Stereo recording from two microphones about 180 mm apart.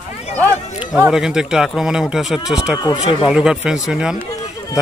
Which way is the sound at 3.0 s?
30° left (ahead or behind).